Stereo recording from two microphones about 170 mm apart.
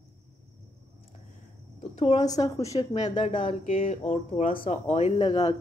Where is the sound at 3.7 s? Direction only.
50° left (ahead or behind).